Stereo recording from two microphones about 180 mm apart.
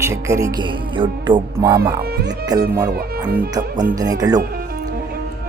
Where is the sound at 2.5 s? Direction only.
20° right (ahead or behind).